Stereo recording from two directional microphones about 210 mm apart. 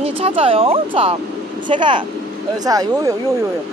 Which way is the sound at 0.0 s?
25° right (ahead or behind).